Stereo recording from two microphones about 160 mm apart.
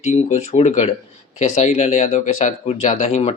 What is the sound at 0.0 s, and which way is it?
Speech, 40° left (ahead or behind).